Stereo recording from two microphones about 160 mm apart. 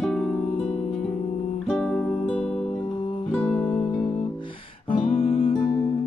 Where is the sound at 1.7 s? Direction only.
5° left (ahead or behind).